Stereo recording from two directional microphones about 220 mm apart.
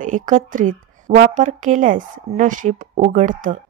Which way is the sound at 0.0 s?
35° right (ahead or behind).